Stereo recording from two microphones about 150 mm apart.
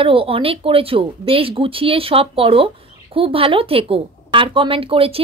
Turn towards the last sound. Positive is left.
turn(degrees=-40)  # may be behind; listen again after turning